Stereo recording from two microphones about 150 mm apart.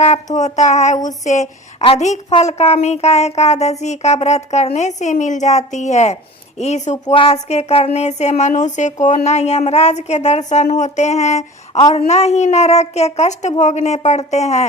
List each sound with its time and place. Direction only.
0.0 s speech: 50° left (ahead or behind)
7.0 s speech: 35° left (ahead or behind)